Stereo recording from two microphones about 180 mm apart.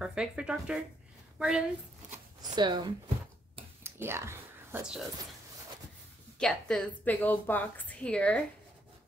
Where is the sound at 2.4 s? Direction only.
25° right (ahead or behind).